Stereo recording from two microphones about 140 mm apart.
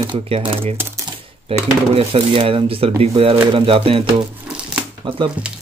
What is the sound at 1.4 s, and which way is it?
Speech, 45° right (ahead or behind).